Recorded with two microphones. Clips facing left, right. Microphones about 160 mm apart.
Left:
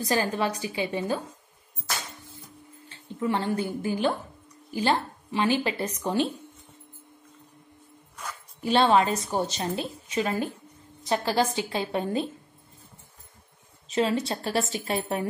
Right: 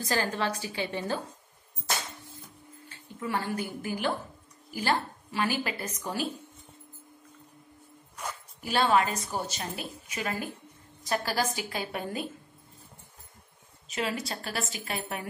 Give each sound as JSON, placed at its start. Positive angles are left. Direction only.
{"t": 0.0, "sound": "a woman's voice", "side_deg": 20}
{"t": 3.2, "sound": "a woman's voice", "side_deg": 25}
{"t": 8.5, "sound": "a woman's voice", "side_deg": 25}
{"t": 13.8, "sound": "a woman's voice", "side_deg": 30}